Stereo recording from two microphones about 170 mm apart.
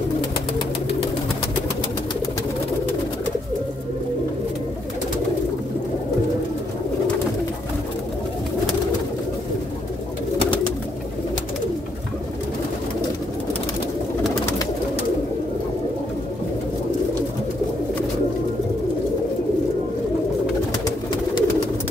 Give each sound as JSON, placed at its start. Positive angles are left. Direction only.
{"t": 20.8, "sound": "bird", "side_deg": 30}